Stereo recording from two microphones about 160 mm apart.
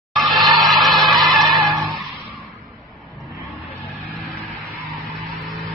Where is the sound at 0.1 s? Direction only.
Centre (ahead or behind).